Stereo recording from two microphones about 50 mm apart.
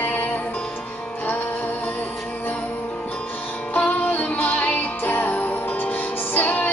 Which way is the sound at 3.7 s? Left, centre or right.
Left.